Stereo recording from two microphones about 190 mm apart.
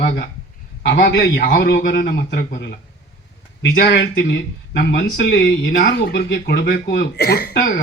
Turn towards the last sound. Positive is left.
turn(degrees=60)  # may be behind; listen again after turning